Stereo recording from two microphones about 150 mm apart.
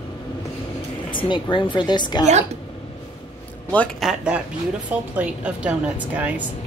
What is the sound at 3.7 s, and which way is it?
Speech, 10° left (ahead or behind).